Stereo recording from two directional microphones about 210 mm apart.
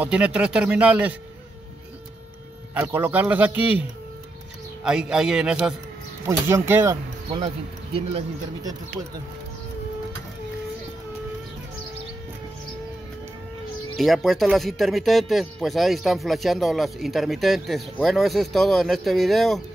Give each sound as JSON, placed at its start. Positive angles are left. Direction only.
{"t": 0.0, "sound": "speech", "side_deg": -5}
{"t": 2.7, "sound": "speech", "side_deg": -10}
{"t": 4.8, "sound": "speech", "side_deg": -5}
{"t": 7.4, "sound": "speech", "side_deg": -25}
{"t": 13.9, "sound": "speech", "side_deg": 0}